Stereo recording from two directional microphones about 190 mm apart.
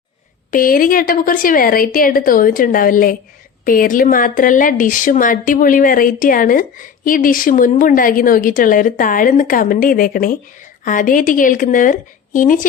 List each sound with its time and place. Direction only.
0.5 s speech: 50° left (ahead or behind)